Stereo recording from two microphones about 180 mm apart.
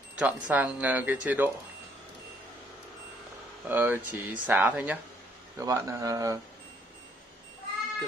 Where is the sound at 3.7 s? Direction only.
10° right (ahead or behind).